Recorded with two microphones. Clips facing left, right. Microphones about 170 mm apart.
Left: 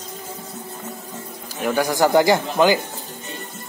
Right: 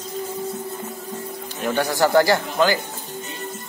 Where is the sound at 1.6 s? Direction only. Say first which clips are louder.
Left 2 dB; 10° left (ahead or behind).